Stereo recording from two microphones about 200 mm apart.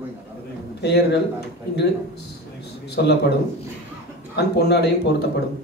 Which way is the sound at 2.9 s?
55° left (ahead or behind).